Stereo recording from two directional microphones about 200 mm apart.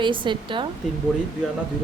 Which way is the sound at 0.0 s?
25° right (ahead or behind).